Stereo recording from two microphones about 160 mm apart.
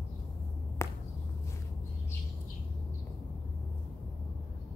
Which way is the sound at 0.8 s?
15° left (ahead or behind).